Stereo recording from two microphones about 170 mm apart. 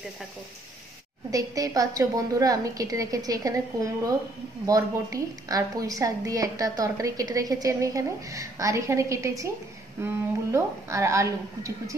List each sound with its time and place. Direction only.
1.3 s a woman's voice: 20° right (ahead or behind)
10.5 s a woman's voice: 15° right (ahead or behind)